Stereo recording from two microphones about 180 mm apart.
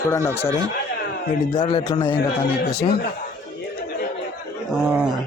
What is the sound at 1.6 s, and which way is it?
Speech, 25° left (ahead or behind).